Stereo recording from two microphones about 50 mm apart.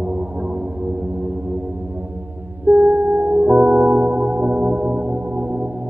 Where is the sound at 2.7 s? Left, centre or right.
Right.